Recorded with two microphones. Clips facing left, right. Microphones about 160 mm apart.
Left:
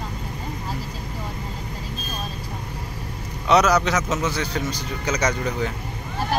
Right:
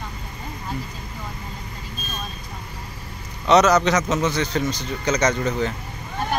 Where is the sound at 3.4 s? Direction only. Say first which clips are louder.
Right 2 dB; 10° left (ahead or behind).